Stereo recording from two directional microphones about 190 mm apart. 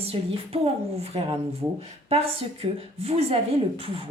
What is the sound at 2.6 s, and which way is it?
A woman's voice, 30° right (ahead or behind).